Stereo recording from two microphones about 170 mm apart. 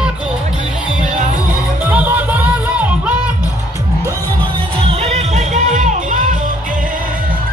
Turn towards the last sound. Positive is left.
turn(degrees=-50)  # may be behind; listen again after turning